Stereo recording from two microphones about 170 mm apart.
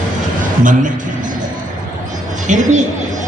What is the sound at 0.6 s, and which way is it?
Speech, 50° right (ahead or behind).